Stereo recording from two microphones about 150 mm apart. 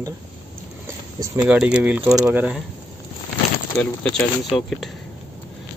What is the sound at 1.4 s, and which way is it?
Speech, 10° right (ahead or behind).